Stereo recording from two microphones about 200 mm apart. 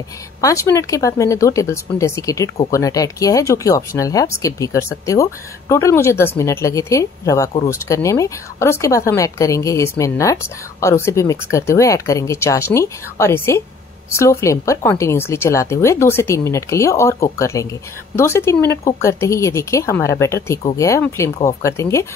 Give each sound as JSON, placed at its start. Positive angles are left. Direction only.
{"t": 0.4, "sound": "a woman's voice", "side_deg": 15}